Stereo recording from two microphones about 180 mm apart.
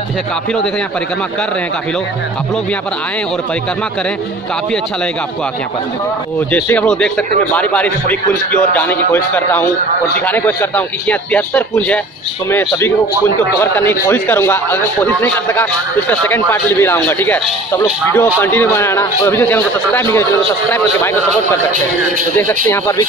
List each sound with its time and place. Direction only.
6.5 s speech: 10° left (ahead or behind)
22.4 s speech: 15° left (ahead or behind)